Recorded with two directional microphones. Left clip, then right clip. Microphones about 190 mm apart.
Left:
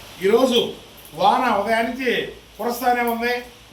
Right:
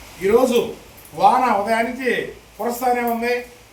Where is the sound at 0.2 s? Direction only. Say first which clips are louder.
Right 1 dB; 15° right (ahead or behind).